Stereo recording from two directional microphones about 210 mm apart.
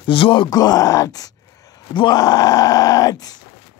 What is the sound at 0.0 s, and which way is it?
Speech, 25° left (ahead or behind).